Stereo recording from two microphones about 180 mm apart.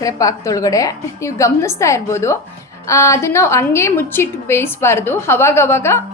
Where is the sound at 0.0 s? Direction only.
20° left (ahead or behind).